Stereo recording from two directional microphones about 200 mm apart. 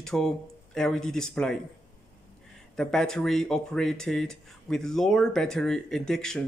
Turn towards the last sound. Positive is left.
turn(degrees=5)  # may be behind; listen again after turning